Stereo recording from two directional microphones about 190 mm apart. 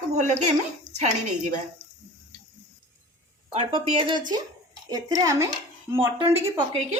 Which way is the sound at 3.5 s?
30° right (ahead or behind).